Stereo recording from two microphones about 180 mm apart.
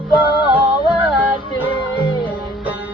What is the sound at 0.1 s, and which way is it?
Music, 10° right (ahead or behind).